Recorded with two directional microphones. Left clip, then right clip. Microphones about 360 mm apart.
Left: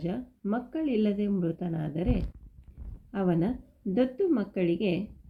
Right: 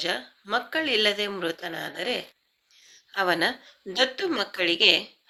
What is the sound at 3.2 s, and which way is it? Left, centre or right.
A woman's voice, right.